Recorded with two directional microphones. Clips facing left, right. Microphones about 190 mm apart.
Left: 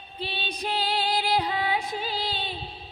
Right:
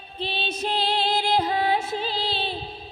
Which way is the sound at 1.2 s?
40° right (ahead or behind).